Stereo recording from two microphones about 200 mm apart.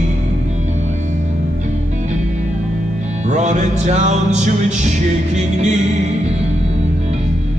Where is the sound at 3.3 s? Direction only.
35° right (ahead or behind).